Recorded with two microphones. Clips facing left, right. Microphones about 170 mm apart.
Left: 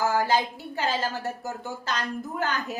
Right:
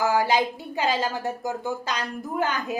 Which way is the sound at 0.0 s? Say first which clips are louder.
Right 2 dB; 15° right (ahead or behind).